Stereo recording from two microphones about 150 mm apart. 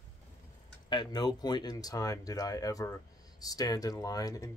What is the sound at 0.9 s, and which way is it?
Speech, 30° left (ahead or behind).